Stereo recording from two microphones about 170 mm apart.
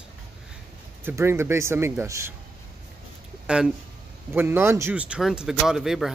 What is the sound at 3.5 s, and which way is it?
Speech, 5° right (ahead or behind).